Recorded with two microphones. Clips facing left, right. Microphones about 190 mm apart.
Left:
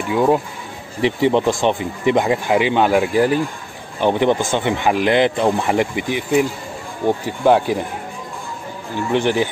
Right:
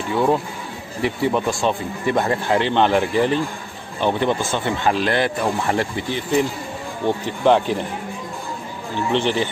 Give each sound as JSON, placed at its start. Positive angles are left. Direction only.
{"t": 0.1, "sound": "speech", "side_deg": 10}
{"t": 9.1, "sound": "speech", "side_deg": 10}